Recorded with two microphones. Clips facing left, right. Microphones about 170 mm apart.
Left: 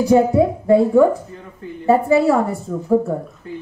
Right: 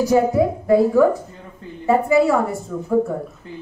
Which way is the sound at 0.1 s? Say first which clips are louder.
Left 5 dB; 25° left (ahead or behind).